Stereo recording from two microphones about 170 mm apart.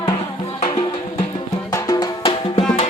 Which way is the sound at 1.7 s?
20° left (ahead or behind).